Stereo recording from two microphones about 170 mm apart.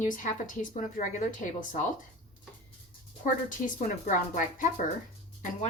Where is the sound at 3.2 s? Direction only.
50° left (ahead or behind).